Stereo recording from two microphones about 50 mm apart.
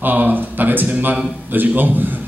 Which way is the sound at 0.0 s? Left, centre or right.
Right.